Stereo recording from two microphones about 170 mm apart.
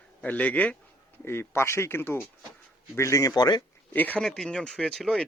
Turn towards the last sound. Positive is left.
turn(degrees=5)  # may be behind; listen again after turning